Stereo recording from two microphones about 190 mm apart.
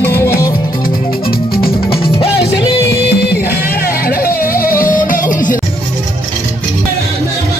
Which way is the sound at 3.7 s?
50° left (ahead or behind).